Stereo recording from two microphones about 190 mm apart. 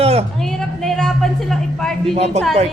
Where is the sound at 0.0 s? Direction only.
30° right (ahead or behind).